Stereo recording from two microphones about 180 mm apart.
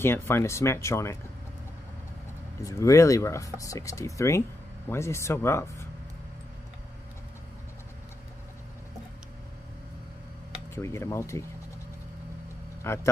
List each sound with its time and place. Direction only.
0.0 s speech: 15° left (ahead or behind)
2.6 s speech: 15° left (ahead or behind)
10.7 s speech: 15° left (ahead or behind)
12.8 s speech: 15° left (ahead or behind)